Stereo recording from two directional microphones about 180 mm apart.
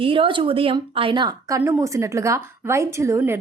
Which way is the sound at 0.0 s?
30° right (ahead or behind).